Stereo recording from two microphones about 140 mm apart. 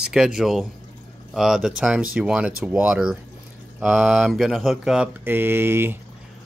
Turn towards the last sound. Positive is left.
turn(degrees=-15)  # may be behind; listen again after turning